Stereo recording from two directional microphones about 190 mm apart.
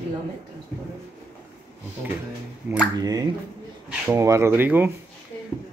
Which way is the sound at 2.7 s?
10° right (ahead or behind).